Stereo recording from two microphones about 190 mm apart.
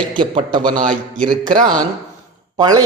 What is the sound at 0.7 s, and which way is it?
Speech, 40° right (ahead or behind).